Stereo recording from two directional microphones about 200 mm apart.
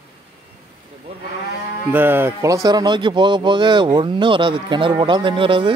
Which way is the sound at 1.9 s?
10° right (ahead or behind).